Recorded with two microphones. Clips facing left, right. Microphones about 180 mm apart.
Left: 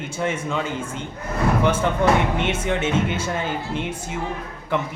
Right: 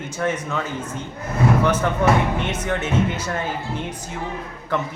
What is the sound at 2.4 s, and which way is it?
Speech, 25° left (ahead or behind).